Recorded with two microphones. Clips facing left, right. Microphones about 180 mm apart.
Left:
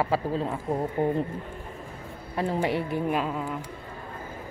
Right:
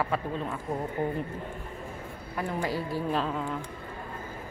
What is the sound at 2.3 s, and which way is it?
Speech, 25° left (ahead or behind).